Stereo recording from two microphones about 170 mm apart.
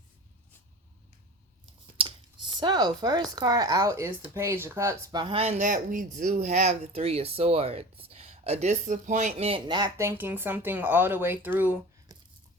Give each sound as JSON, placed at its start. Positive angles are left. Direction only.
{"t": 2.0, "sound": "typing", "side_deg": -30}
{"t": 2.6, "sound": "speech", "side_deg": -25}
{"t": 10.0, "sound": "speech", "side_deg": -15}